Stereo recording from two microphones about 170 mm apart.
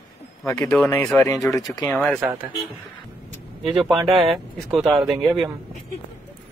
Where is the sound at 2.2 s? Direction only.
15° right (ahead or behind).